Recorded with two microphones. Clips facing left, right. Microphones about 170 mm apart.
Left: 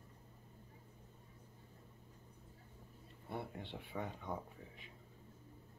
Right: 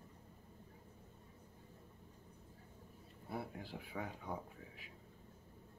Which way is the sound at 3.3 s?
5° right (ahead or behind).